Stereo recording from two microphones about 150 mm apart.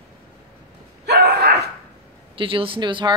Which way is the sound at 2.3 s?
35° right (ahead or behind).